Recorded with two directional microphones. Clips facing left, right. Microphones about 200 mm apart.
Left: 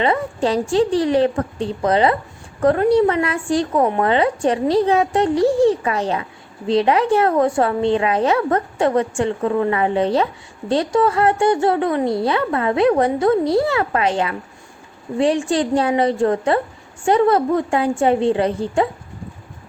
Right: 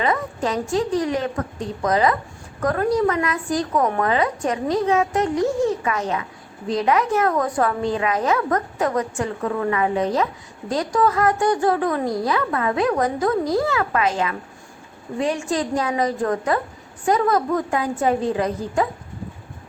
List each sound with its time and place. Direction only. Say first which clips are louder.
0.0 s a woman's voice: left 4 dB; 30° left (ahead or behind)